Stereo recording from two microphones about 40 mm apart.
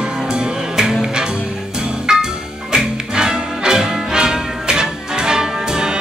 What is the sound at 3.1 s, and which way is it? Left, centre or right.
Music, right.